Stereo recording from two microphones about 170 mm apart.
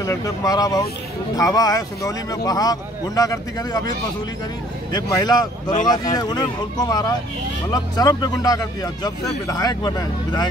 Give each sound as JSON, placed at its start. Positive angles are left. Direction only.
{"t": 0.0, "sound": "speech", "side_deg": 20}
{"t": 4.9, "sound": "speech", "side_deg": 25}